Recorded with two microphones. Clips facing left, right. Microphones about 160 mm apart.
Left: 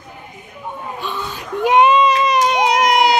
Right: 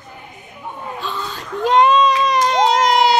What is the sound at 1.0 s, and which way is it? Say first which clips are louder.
Baby cry: left 1 dB; 15° left (ahead or behind).